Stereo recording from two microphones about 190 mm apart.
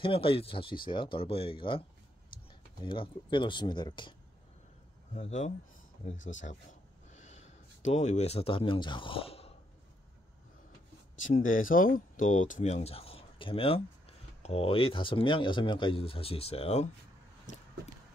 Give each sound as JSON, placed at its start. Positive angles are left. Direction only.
{"t": 0.0, "sound": "speech", "side_deg": 30}
{"t": 5.1, "sound": "speech", "side_deg": 35}
{"t": 7.1, "sound": "speech", "side_deg": 40}
{"t": 11.2, "sound": "speech", "side_deg": 45}